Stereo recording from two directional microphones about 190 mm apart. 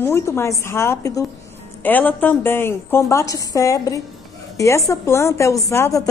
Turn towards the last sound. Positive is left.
turn(degrees=15)  # may be behind; listen again after turning